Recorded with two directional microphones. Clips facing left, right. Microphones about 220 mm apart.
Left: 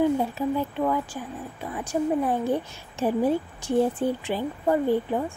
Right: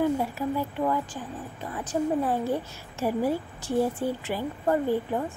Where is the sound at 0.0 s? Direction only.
20° left (ahead or behind).